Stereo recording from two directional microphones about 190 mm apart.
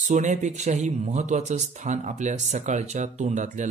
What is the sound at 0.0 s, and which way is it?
Speech, 40° right (ahead or behind).